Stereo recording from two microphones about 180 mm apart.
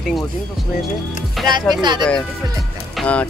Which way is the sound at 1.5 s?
25° right (ahead or behind).